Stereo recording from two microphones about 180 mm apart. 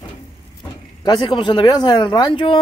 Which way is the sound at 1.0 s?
25° left (ahead or behind).